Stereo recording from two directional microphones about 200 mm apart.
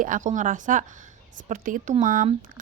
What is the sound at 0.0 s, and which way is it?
Speech, 40° right (ahead or behind).